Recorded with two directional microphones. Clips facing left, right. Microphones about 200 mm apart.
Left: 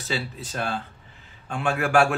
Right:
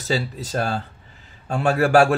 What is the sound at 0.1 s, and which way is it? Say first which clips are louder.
A man's voice: right 7 dB; 40° right (ahead or behind).